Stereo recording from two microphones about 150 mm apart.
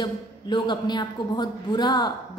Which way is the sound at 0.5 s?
30° left (ahead or behind).